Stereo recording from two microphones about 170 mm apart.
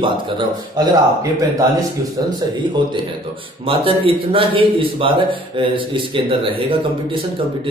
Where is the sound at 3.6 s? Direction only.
30° right (ahead or behind).